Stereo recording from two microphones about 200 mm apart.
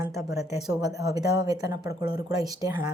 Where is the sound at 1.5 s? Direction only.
20° right (ahead or behind).